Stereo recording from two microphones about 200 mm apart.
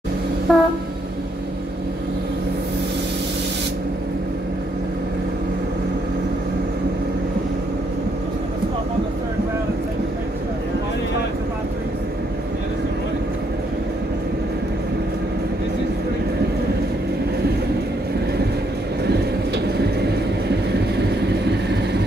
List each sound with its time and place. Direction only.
0.5 s train: centre (ahead or behind)
19.0 s train: 55° right (ahead or behind)
21.0 s vehicle: 60° right (ahead or behind)